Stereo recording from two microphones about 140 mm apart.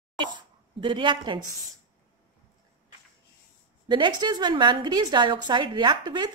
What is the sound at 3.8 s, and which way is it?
A woman's voice, 30° right (ahead or behind).